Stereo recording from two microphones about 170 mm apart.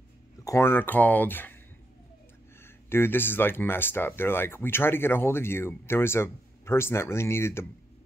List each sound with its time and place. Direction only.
0.4 s speech: 15° left (ahead or behind)
2.6 s speech: 15° left (ahead or behind)